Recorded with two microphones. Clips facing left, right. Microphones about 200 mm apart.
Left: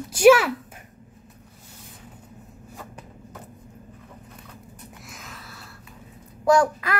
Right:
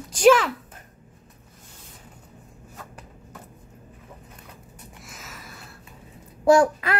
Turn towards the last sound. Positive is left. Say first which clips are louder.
# right 2 dB
turn(degrees=-25)  # may be behind; listen again after turning